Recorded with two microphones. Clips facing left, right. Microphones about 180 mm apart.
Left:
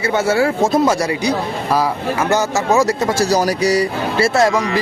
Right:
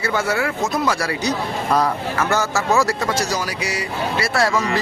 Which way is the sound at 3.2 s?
35° left (ahead or behind).